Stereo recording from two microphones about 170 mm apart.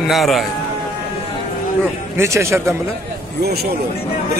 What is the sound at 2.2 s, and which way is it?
Speech, 15° right (ahead or behind).